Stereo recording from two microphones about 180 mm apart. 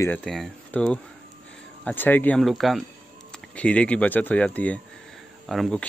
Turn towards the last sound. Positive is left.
turn(degrees=5)  # may be behind; listen again after turning